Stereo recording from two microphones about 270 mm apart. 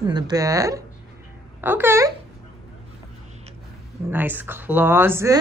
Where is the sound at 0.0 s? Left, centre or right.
Centre.